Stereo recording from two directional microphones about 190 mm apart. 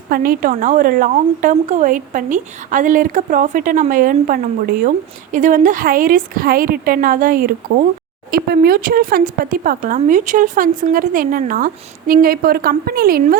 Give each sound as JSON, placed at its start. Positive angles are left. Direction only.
{"t": 0.1, "sound": "speech", "side_deg": -50}